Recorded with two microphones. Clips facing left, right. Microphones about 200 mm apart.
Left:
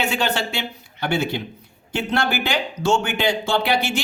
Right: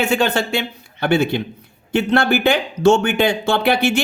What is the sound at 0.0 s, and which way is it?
Speech, 50° right (ahead or behind).